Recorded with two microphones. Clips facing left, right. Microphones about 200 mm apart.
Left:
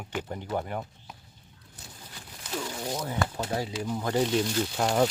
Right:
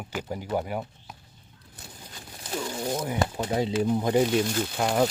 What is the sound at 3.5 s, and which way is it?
Speech, 20° right (ahead or behind).